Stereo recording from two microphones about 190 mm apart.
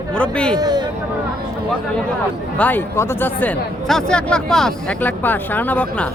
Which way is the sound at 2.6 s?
10° left (ahead or behind).